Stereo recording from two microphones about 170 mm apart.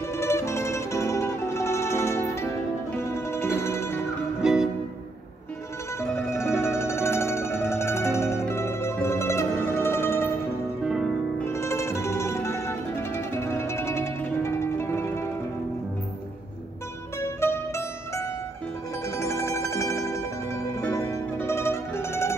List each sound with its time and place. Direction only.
0.2 s music: 15° left (ahead or behind)
4.4 s music: 5° right (ahead or behind)
5.9 s music: 15° left (ahead or behind)
11.4 s music: 15° left (ahead or behind)
17.2 s mandolin: 15° left (ahead or behind)
19.1 s music: 15° left (ahead or behind)